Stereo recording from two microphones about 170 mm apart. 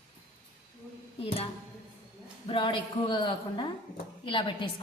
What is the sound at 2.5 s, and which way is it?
A woman's voice, 30° left (ahead or behind).